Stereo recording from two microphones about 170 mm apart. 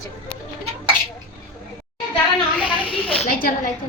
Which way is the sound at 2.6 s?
30° left (ahead or behind).